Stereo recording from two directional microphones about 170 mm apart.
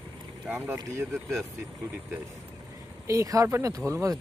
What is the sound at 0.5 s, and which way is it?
Speech, 10° right (ahead or behind).